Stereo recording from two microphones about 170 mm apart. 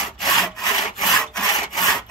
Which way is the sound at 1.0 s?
Centre (ahead or behind).